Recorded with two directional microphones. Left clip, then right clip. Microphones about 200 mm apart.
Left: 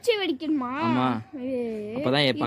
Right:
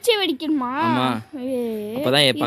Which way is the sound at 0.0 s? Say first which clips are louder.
Right 5 dB; 35° right (ahead or behind).